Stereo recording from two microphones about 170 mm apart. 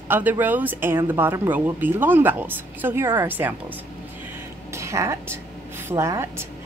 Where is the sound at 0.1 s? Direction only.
10° right (ahead or behind).